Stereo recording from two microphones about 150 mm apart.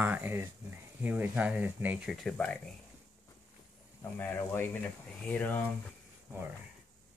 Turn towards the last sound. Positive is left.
turn(degrees=10)  # may be behind; listen again after turning